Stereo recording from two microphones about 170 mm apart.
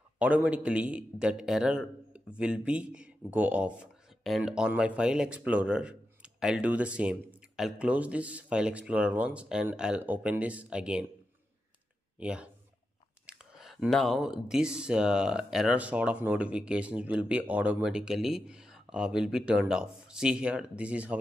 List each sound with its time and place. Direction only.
0.2 s a man's voice: 10° right (ahead or behind)
12.2 s a man's voice: 5° right (ahead or behind)